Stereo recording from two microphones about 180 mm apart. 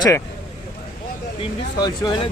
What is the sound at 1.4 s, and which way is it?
Speech, 25° left (ahead or behind).